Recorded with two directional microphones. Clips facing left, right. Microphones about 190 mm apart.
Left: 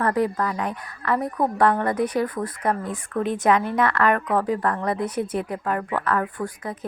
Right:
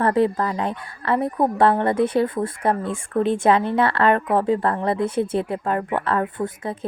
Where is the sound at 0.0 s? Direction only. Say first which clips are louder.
Right 3 dB; 25° right (ahead or behind).